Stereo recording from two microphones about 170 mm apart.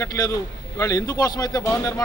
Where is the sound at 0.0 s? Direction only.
20° left (ahead or behind).